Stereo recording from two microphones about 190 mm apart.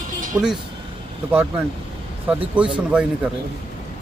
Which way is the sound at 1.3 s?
10° right (ahead or behind).